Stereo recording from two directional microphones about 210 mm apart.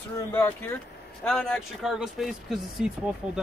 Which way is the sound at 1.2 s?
5° left (ahead or behind).